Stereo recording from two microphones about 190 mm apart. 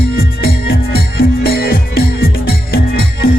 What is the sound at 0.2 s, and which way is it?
Music, 55° left (ahead or behind).